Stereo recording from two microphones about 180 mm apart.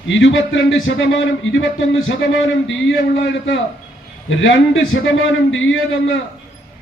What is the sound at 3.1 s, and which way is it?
A man's voice, 90° left.